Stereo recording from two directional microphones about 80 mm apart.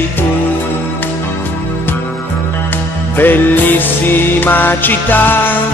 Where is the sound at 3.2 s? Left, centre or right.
Left.